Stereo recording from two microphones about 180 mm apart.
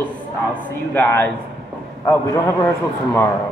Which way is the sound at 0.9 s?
10° left (ahead or behind).